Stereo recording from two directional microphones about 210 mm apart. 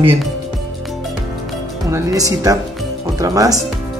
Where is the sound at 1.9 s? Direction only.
15° right (ahead or behind).